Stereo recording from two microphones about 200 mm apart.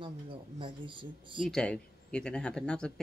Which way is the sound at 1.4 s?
5° left (ahead or behind).